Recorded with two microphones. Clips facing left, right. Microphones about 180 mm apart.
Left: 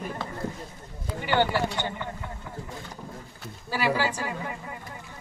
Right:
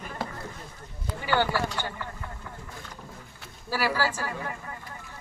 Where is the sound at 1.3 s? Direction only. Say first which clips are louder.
Left 2 dB; 20° left (ahead or behind).